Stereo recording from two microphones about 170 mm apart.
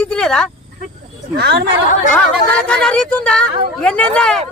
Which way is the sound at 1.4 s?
75° right (ahead or behind).